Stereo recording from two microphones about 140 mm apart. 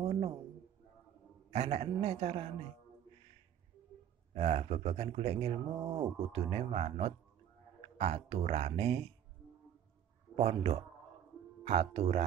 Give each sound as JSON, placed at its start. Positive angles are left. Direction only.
{"t": 0.0, "sound": "a sound", "side_deg": -45}
{"t": 1.5, "sound": "speech", "side_deg": -50}
{"t": 4.3, "sound": "speech", "side_deg": -50}
{"t": 10.3, "sound": "speech", "side_deg": -45}